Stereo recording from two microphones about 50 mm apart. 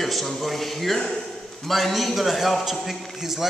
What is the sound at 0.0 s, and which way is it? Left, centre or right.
A man's voice, centre.